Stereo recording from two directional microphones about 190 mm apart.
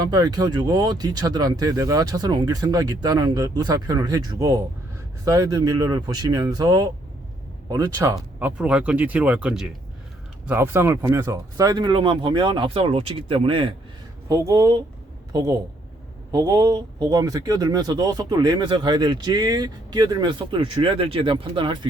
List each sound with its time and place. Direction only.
0.0 s a man's voice: 20° right (ahead or behind)
14.3 s a man's voice: 15° right (ahead or behind)